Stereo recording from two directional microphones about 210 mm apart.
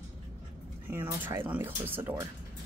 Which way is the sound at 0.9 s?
10° right (ahead or behind).